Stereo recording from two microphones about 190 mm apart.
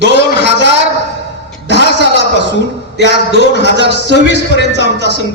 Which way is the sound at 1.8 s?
65° left (ahead or behind).